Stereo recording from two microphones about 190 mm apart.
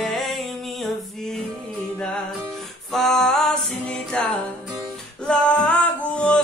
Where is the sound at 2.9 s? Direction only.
Centre (ahead or behind).